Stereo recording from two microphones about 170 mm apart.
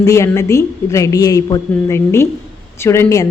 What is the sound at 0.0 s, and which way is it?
A woman's voice, 20° left (ahead or behind).